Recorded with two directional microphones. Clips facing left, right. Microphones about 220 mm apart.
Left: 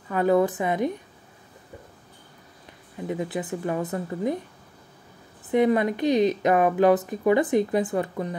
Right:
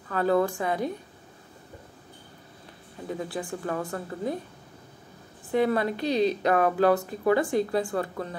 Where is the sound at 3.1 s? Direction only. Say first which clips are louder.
Left 3 dB; 20° left (ahead or behind).